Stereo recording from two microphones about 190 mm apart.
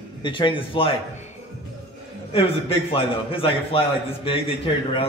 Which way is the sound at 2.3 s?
30° left (ahead or behind).